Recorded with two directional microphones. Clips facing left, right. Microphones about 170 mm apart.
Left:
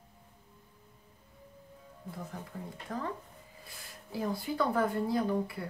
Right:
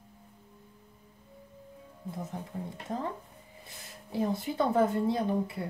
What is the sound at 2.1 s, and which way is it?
Speech, 20° right (ahead or behind).